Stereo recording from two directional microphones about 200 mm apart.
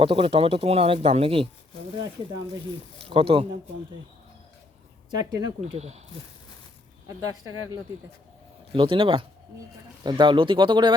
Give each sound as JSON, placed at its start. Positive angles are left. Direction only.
{"t": 0.0, "sound": "speech", "side_deg": -25}
{"t": 3.0, "sound": "speech", "side_deg": -30}
{"t": 5.3, "sound": "speech", "side_deg": -20}
{"t": 5.7, "sound": "speech", "side_deg": -35}
{"t": 8.7, "sound": "speech", "side_deg": -25}